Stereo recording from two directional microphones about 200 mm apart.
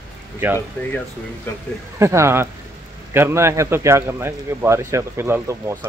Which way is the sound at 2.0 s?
15° right (ahead or behind).